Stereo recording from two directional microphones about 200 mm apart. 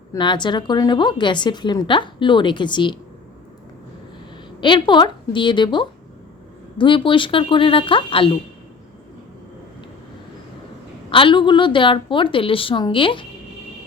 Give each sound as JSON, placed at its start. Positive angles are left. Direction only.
{"t": 0.1, "sound": "a woman's voice", "side_deg": 20}
{"t": 4.6, "sound": "a woman's voice", "side_deg": 25}
{"t": 11.1, "sound": "a woman's voice", "side_deg": 25}